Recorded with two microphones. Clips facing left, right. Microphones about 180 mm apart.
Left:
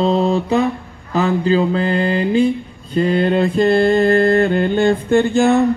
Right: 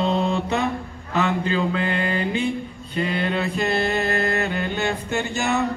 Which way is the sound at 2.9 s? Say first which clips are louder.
Left 9 dB; 40° left (ahead or behind).